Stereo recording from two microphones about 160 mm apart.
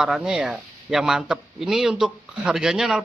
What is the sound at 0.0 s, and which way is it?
Speech, 5° right (ahead or behind).